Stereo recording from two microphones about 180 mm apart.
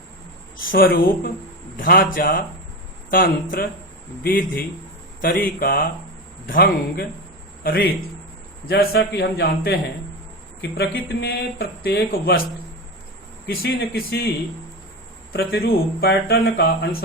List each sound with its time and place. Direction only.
0.7 s a man's voice: 55° left (ahead or behind); by 12.4 s 70° left (ahead or behind)
13.5 s speech: 60° left (ahead or behind)
15.3 s speech: 60° left (ahead or behind)